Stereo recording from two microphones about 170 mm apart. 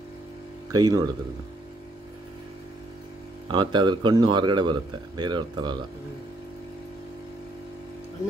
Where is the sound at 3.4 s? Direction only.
25° right (ahead or behind).